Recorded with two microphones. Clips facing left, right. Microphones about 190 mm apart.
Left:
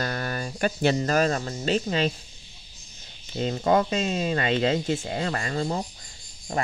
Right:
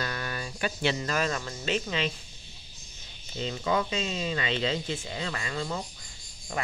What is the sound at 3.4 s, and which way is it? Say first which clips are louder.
Speech: left 6 dB; 45° left (ahead or behind).